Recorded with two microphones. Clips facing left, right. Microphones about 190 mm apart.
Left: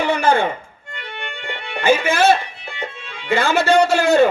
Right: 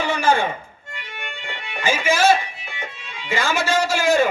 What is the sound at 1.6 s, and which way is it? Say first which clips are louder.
A man's voice: left 5 dB; 60° left (ahead or behind).